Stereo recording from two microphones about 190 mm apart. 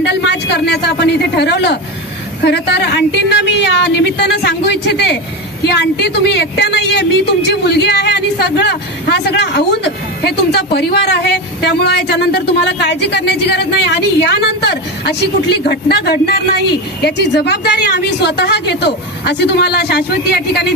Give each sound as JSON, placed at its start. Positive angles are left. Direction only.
{"t": 0.0, "sound": "a man's voice", "side_deg": 65}